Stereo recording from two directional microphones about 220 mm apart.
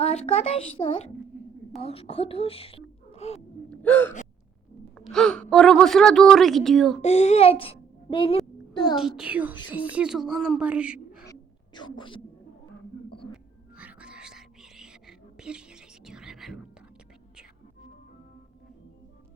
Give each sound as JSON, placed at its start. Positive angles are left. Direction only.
{"t": 0.0, "sound": "a child's voice", "side_deg": 30}
{"t": 3.7, "sound": "gasp", "side_deg": 10}
{"t": 4.9, "sound": "a woman's voice", "side_deg": 0}
{"t": 7.0, "sound": "a child's voice", "side_deg": 30}
{"t": 9.0, "sound": "a woman's voice", "side_deg": -5}
{"t": 11.3, "sound": "a sound", "side_deg": 20}
{"t": 13.3, "sound": "music", "side_deg": -5}
{"t": 15.4, "sound": "a sound", "side_deg": -5}